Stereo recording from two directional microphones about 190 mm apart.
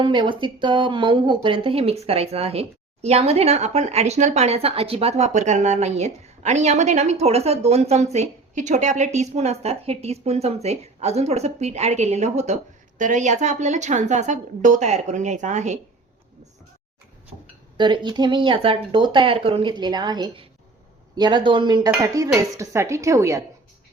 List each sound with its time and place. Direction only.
0.0 s speech: 25° right (ahead or behind)
17.7 s speech: 25° right (ahead or behind)